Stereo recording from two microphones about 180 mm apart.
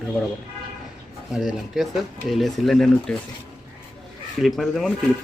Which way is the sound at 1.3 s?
Centre (ahead or behind).